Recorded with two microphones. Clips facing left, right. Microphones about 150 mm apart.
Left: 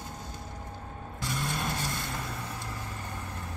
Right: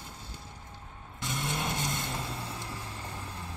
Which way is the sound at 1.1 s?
20° right (ahead or behind).